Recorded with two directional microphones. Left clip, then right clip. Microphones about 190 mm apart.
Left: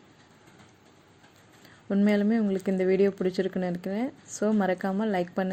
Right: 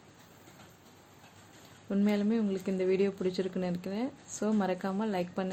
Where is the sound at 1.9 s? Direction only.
25° left (ahead or behind).